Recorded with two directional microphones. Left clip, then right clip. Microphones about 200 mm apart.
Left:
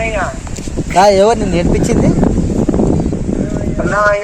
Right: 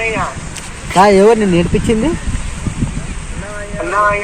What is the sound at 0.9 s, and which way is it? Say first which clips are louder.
Speech: even; 35° left (ahead or behind).